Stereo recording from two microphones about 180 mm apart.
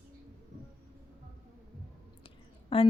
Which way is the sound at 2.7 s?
30° left (ahead or behind).